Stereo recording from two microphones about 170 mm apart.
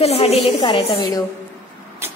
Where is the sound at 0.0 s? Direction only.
35° left (ahead or behind).